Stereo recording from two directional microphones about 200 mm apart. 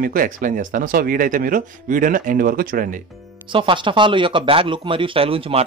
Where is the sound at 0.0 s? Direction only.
45° right (ahead or behind).